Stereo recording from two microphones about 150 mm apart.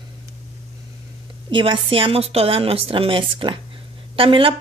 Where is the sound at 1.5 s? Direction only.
35° right (ahead or behind).